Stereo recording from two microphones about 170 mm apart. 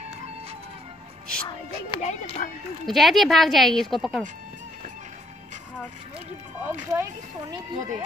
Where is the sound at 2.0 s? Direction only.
40° left (ahead or behind).